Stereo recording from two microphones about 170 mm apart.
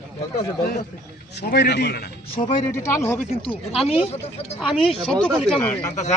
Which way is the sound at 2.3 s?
35° left (ahead or behind).